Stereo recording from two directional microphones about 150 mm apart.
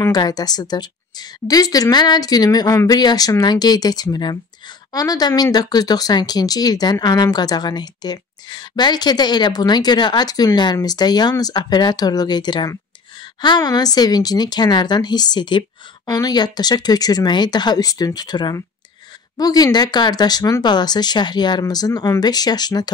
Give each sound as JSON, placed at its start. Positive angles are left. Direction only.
{"t": 0.1, "sound": "speech", "side_deg": 25}